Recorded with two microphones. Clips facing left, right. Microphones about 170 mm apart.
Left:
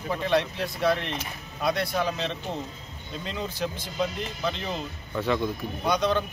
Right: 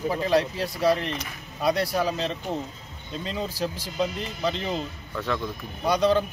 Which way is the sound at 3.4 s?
30° right (ahead or behind).